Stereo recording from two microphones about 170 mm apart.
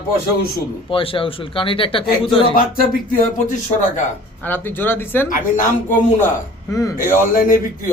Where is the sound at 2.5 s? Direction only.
55° left (ahead or behind).